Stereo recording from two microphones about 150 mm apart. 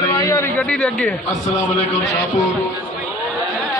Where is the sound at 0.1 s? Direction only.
25° left (ahead or behind).